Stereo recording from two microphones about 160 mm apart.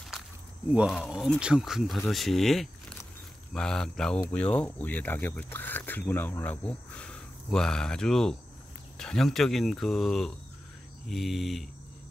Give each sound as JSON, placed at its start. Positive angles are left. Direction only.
{"t": 0.7, "sound": "speech", "side_deg": -10}